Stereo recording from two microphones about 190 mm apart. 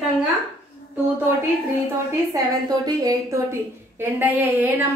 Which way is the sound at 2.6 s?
20° right (ahead or behind).